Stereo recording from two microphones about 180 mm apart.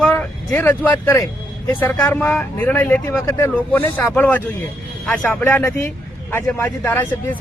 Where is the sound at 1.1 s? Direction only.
20° left (ahead or behind).